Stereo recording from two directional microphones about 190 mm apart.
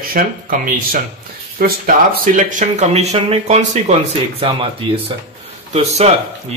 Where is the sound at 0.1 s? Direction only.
45° right (ahead or behind).